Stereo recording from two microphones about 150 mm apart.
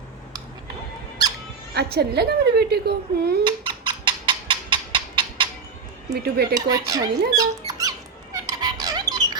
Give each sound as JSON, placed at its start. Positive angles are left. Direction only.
{"t": 1.7, "sound": "speech", "side_deg": -90}
{"t": 3.4, "sound": "a sound", "side_deg": -30}
{"t": 6.1, "sound": "speech", "side_deg": -90}
{"t": 6.5, "sound": "squeak", "side_deg": -25}